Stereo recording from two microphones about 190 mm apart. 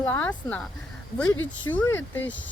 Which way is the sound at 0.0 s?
10° left (ahead or behind).